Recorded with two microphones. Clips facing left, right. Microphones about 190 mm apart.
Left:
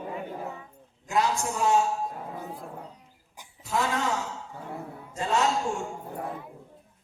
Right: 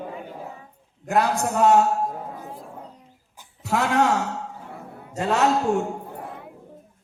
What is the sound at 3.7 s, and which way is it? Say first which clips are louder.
A man's voice: right 7 dB; 70° right (ahead or behind).